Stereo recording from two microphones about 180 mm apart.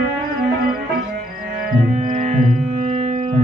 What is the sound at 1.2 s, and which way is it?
Music, 45° right (ahead or behind).